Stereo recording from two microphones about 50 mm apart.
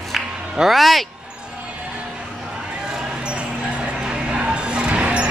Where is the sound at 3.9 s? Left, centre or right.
Centre.